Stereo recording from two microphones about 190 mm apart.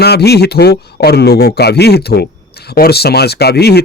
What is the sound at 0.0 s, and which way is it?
Speech, 60° left (ahead or behind).